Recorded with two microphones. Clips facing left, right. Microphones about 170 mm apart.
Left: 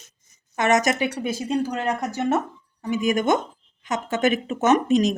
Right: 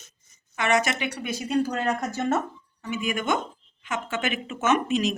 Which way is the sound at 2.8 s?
40° left (ahead or behind).